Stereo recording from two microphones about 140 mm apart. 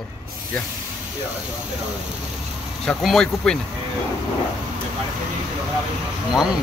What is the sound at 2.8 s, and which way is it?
Speech, centre (ahead or behind).